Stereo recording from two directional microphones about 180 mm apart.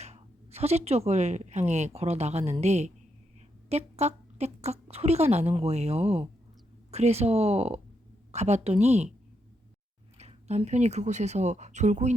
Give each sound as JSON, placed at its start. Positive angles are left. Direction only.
{"t": 0.0, "sound": "speech", "side_deg": -35}
{"t": 10.2, "sound": "speech", "side_deg": -35}